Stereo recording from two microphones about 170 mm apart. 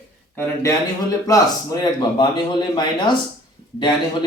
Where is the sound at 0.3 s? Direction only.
20° left (ahead or behind).